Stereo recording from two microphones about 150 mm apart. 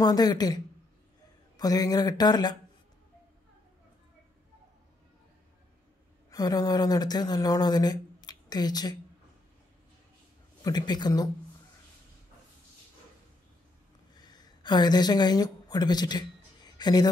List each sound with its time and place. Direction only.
0.0 s speech: 25° left (ahead or behind)
1.6 s speech: 25° left (ahead or behind)
6.3 s speech: 25° left (ahead or behind)
10.6 s speech: 30° left (ahead or behind)
14.1 s a sound: 25° left (ahead or behind)